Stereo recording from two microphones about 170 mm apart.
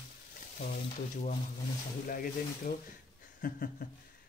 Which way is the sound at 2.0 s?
55° left (ahead or behind).